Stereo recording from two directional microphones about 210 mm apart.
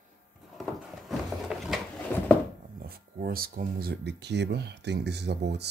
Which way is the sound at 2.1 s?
10° left (ahead or behind).